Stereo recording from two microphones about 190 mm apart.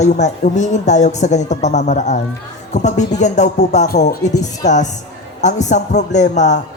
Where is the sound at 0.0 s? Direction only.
40° left (ahead or behind).